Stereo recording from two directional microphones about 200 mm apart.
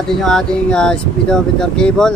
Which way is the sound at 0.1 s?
Centre (ahead or behind).